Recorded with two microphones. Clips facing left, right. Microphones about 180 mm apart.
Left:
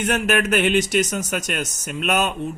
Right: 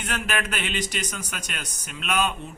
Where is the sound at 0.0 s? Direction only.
50° left (ahead or behind).